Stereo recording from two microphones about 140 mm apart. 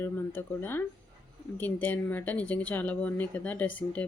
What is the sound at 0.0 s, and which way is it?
Speech, 15° left (ahead or behind).